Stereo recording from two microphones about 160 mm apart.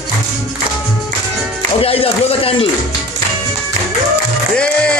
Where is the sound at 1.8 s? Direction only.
35° left (ahead or behind).